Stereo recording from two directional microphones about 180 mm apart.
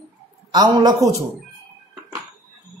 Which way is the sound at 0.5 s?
25° right (ahead or behind).